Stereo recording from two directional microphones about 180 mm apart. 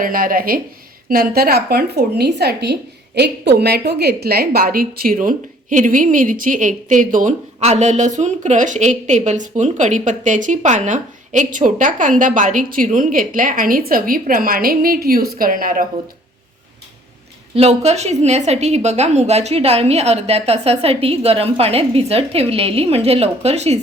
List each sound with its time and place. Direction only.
0.0 s a woman's voice: 50° right (ahead or behind)
17.5 s a woman's voice: 35° right (ahead or behind)